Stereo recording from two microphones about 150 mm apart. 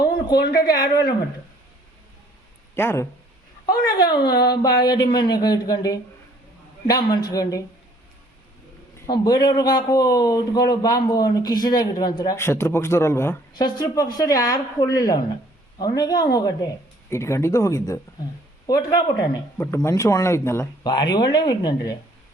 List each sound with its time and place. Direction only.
0.3 s speech: 85° left
0.8 s a man's voice: 25° left (ahead or behind)
2.7 s speech: 15° left (ahead or behind)
3.7 s a man's voice: 30° left (ahead or behind)
9.0 s a man's voice: 25° left (ahead or behind)
13.6 s a man's voice: 25° left (ahead or behind)
20.9 s a man's voice: 30° left (ahead or behind)